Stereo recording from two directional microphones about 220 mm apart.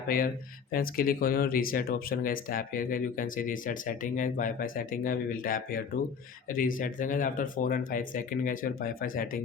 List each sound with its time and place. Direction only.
0.7 s speech: 40° left (ahead or behind)